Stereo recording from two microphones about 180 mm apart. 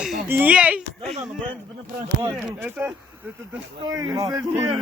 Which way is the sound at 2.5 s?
10° right (ahead or behind).